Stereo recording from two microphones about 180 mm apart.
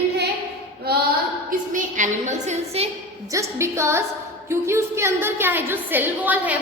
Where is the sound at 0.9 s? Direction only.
60° right (ahead or behind).